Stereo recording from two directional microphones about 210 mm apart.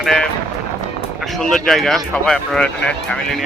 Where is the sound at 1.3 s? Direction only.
Centre (ahead or behind).